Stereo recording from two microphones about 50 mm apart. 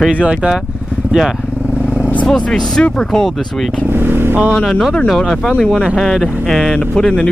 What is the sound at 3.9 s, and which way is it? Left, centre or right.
Vehicle, right.